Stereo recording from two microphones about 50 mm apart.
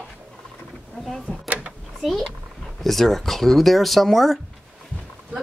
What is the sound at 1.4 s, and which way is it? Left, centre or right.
Drawer open or close, right.